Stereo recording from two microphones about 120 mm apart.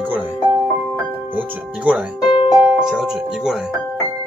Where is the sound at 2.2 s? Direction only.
45° left (ahead or behind).